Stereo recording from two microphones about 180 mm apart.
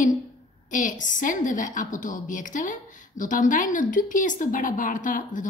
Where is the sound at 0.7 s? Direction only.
45° left (ahead or behind).